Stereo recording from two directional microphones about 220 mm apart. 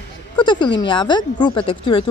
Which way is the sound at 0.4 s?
20° left (ahead or behind).